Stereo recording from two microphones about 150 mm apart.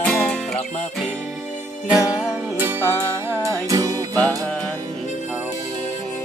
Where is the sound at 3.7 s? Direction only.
25° right (ahead or behind).